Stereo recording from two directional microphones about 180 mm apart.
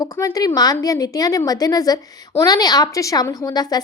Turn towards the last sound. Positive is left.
turn(degrees=20)  # may be behind; listen again after turning